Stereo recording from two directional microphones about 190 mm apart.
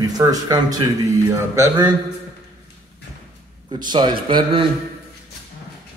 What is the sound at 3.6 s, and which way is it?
A man's voice, 25° right (ahead or behind).